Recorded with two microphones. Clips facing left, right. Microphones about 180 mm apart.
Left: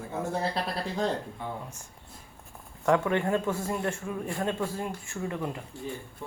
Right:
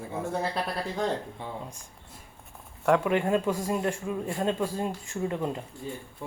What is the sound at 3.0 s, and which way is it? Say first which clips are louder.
A man's voice: right 2 dB; 15° right (ahead or behind).